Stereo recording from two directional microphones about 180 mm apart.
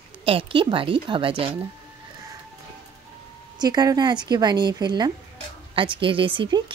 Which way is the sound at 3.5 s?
20° right (ahead or behind).